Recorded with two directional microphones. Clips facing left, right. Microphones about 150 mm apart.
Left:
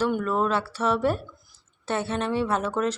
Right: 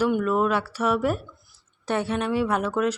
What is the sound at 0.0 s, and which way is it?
A woman's voice, 10° right (ahead or behind).